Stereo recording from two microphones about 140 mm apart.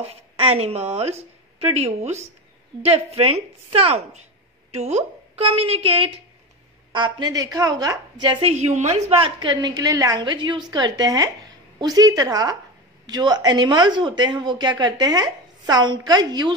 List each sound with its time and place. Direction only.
0.0 s a woman's voice: 45° right (ahead or behind)
8.5 s a woman's voice: 55° right (ahead or behind); by 16.5 s 30° right (ahead or behind)